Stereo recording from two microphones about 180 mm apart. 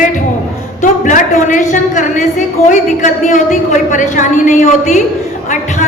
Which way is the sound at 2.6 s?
45° left (ahead or behind).